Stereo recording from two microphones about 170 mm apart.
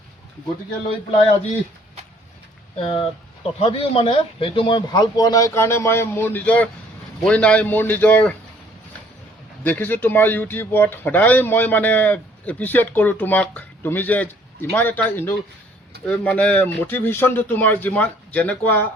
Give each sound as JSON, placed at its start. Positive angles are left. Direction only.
{"t": 2.7, "sound": "speech", "side_deg": 30}
{"t": 9.6, "sound": "speech", "side_deg": 10}